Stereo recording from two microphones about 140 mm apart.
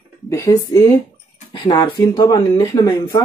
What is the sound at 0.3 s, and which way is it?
Speech, 20° left (ahead or behind).